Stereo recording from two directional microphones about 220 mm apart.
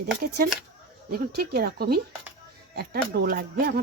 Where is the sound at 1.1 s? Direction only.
45° right (ahead or behind).